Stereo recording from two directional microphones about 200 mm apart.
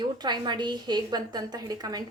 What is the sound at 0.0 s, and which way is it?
A woman's voice, 20° right (ahead or behind).